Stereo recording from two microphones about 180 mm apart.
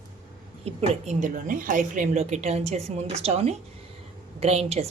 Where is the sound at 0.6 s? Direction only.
35° right (ahead or behind).